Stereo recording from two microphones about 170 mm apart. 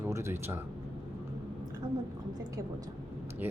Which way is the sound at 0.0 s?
15° right (ahead or behind).